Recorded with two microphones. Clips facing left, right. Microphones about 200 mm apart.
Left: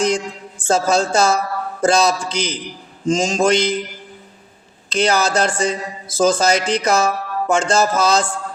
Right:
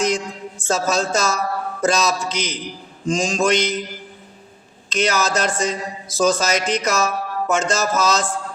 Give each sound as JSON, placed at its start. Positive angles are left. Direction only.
{"t": 0.7, "sound": "music", "side_deg": 30}
{"t": 1.8, "sound": "a man's voice", "side_deg": 30}
{"t": 4.9, "sound": "music", "side_deg": 30}